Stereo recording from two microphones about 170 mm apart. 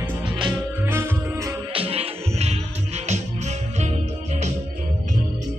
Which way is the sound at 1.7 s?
35° right (ahead or behind).